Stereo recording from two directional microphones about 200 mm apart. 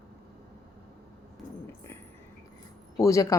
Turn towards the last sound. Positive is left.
turn(degrees=15)  # may be behind; listen again after turning